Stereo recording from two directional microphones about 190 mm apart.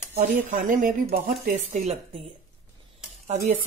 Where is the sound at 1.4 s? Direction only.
40° right (ahead or behind).